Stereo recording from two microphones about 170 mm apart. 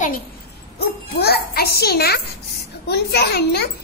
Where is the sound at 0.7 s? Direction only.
70° left (ahead or behind).